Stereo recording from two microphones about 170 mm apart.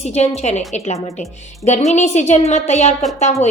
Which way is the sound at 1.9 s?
40° left (ahead or behind).